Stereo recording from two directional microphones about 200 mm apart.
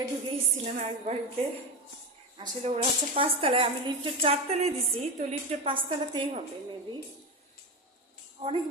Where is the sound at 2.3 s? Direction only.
25° right (ahead or behind).